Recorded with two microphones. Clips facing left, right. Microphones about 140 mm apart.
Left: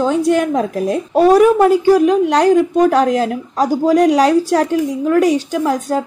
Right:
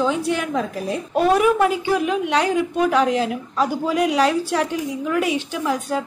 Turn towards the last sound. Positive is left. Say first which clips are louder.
# left 6 dB
turn(degrees=40)  # may be behind; listen again after turning